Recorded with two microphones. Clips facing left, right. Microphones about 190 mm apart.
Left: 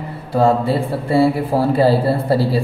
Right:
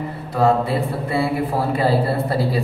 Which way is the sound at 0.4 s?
30° left (ahead or behind).